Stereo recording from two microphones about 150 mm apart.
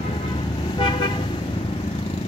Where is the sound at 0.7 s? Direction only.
30° left (ahead or behind).